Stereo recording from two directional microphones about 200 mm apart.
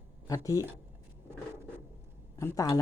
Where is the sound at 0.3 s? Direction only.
15° left (ahead or behind).